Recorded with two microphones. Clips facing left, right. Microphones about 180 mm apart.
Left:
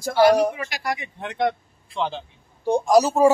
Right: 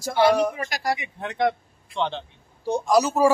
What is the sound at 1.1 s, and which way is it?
Speech, centre (ahead or behind).